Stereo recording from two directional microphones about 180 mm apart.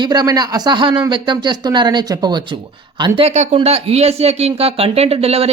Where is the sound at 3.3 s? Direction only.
40° right (ahead or behind).